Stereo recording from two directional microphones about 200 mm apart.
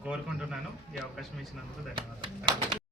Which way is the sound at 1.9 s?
25° right (ahead or behind).